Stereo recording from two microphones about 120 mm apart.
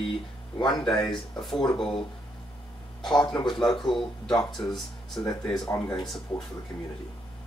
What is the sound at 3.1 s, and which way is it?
Speech, 35° left (ahead or behind).